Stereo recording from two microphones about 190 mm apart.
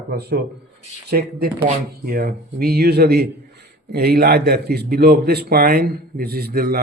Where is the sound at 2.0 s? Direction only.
50° right (ahead or behind).